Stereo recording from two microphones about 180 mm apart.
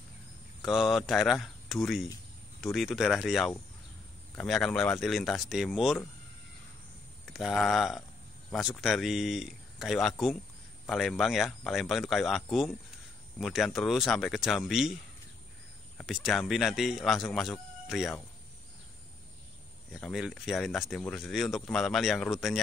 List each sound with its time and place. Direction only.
0.6 s speech: centre (ahead or behind)
7.2 s speech: centre (ahead or behind)
16.0 s speech: centre (ahead or behind)
19.9 s speech: centre (ahead or behind)